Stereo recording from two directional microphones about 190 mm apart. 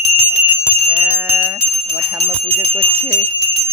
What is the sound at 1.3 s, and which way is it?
Speech, 15° right (ahead or behind).